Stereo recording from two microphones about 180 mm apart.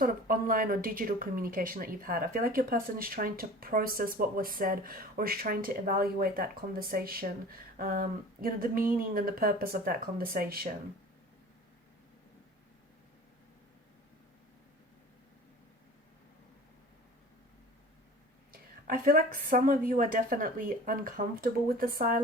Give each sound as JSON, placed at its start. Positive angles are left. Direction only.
{"t": 0.0, "sound": "speech", "side_deg": -50}
{"t": 18.5, "sound": "speech", "side_deg": -50}